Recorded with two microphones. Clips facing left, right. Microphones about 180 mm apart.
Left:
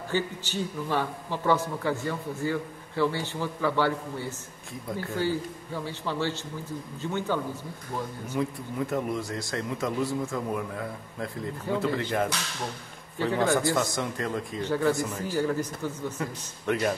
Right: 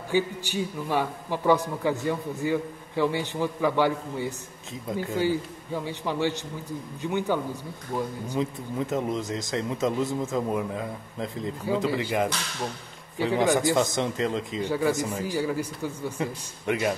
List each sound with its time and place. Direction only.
0.1 s a man's voice: 10° right (ahead or behind)